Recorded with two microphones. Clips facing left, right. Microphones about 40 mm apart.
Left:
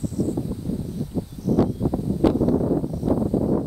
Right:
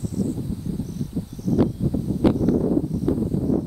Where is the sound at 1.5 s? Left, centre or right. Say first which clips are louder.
Left 1 dB; centre.